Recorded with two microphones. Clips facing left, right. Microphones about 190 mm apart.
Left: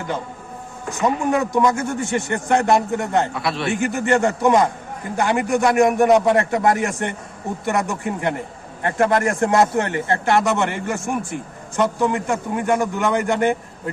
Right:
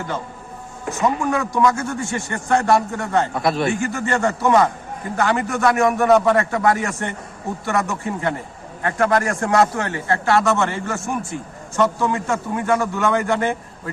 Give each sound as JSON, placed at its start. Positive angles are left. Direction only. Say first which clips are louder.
{"t": 1.0, "sound": "a man's voice", "louder": "left 1 dB", "side_deg": 20}
{"t": 3.3, "sound": "a man's voice", "louder": "right 4 dB", "side_deg": -45}
{"t": 3.8, "sound": "a man's voice", "louder": "left 3 dB", "side_deg": 20}